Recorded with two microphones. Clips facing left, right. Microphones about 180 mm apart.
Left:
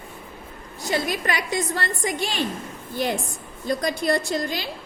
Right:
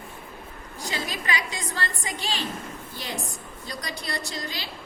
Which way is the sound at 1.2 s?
50° left (ahead or behind).